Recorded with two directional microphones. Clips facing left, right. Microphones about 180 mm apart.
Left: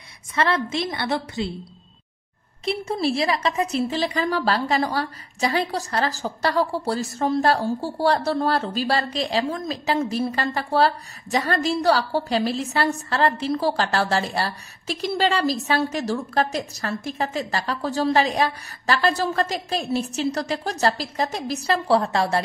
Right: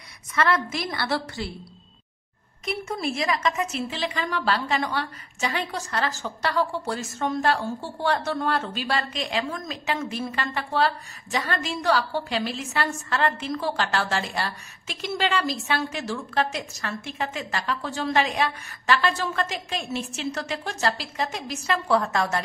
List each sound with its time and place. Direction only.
0.3 s a woman's voice: 25° left (ahead or behind)
2.6 s a woman's voice: 30° left (ahead or behind)